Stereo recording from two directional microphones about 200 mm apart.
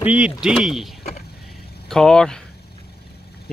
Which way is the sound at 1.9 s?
5° left (ahead or behind).